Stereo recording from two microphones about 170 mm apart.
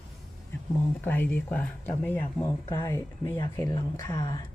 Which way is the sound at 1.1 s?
10° left (ahead or behind).